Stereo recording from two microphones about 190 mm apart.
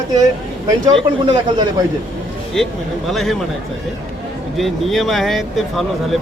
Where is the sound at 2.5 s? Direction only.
Centre (ahead or behind).